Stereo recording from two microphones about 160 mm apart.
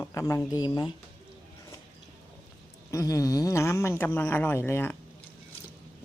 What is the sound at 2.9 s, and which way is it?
Speech, 20° left (ahead or behind).